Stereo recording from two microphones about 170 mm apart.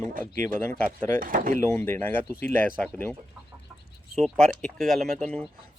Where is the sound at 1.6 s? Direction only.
15° left (ahead or behind).